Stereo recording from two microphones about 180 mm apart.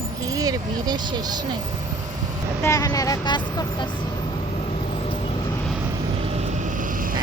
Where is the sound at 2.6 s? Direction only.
20° left (ahead or behind).